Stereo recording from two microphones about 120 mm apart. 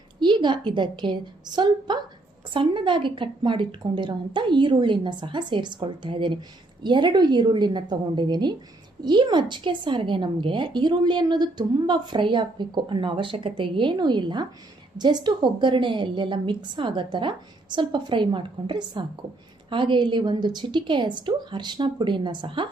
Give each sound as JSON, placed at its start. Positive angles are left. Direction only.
{"t": 0.2, "sound": "a woman's voice", "side_deg": -40}